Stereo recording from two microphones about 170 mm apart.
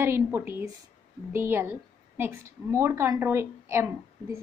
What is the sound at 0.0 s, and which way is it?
A woman's voice, 15° right (ahead or behind).